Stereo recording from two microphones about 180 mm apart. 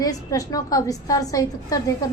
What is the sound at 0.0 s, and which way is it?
A woman's voice, 20° left (ahead or behind).